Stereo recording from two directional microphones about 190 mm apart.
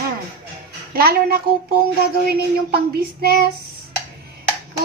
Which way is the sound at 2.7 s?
55° right (ahead or behind).